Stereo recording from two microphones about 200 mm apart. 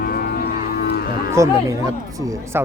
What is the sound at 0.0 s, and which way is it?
Music, 50° left (ahead or behind).